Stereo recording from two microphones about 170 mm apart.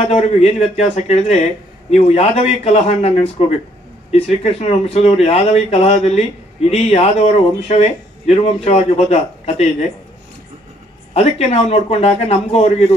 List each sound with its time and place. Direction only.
0.0 s speech: 40° left (ahead or behind)
11.1 s speech: 40° left (ahead or behind)